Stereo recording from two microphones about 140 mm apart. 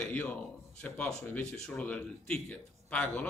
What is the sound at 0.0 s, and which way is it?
Speech, 10° left (ahead or behind).